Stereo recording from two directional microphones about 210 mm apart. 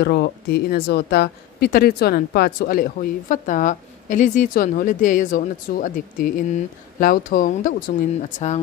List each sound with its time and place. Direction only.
0.0 s speech: 50° left (ahead or behind); by 8.5 s 35° left (ahead or behind)